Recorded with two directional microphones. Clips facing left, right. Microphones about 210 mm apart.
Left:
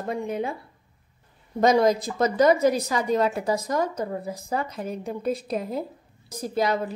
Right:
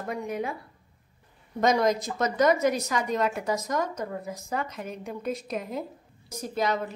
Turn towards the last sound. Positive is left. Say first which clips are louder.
# left 3 dB
turn(degrees=35)  # may be behind; listen again after turning